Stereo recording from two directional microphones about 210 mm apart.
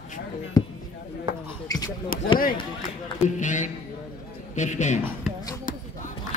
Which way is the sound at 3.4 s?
35° left (ahead or behind).